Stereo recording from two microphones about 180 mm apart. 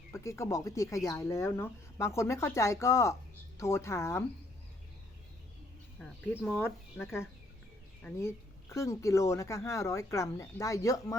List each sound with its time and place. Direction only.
0.1 s speech: 15° left (ahead or behind)
6.3 s speech: centre (ahead or behind)
7.0 s speech: 15° left (ahead or behind)
8.7 s speech: 15° left (ahead or behind)